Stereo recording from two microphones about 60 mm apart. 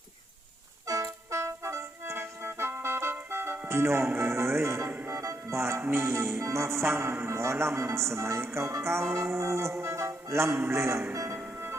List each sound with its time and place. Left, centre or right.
0.9 s music: right
5.1 s music: right
11.3 s music: right